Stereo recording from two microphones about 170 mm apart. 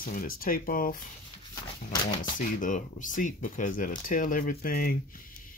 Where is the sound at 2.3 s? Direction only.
50° left (ahead or behind).